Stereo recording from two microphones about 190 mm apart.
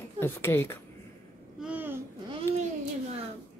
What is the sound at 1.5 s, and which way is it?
Babbling, 5° right (ahead or behind).